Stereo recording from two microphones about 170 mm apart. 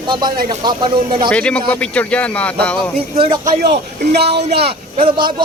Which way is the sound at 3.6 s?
75° right (ahead or behind).